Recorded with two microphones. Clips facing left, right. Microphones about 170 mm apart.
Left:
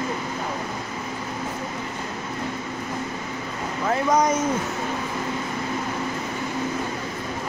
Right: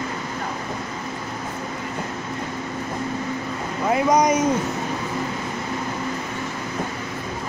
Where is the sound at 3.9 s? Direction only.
15° right (ahead or behind).